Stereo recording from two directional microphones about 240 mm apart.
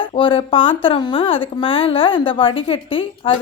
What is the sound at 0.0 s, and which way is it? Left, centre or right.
A woman's voice, left.